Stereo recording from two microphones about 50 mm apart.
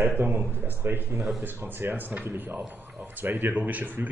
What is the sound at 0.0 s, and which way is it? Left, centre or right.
Speech, right.